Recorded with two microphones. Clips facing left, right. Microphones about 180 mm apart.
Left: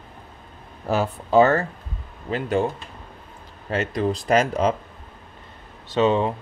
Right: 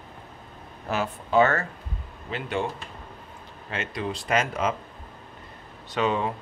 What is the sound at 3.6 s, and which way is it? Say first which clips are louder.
Speech: left 8 dB; 40° left (ahead or behind).